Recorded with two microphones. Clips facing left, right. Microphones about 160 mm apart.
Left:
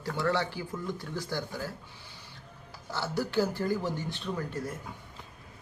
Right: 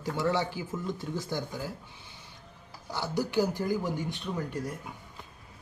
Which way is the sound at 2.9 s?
15° right (ahead or behind).